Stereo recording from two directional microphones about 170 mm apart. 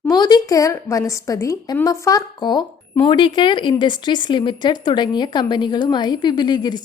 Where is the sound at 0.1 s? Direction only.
25° left (ahead or behind).